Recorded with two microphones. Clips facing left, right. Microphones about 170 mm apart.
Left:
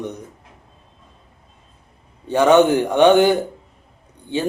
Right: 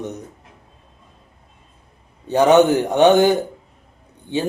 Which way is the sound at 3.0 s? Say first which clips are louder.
Even; 40° right (ahead or behind).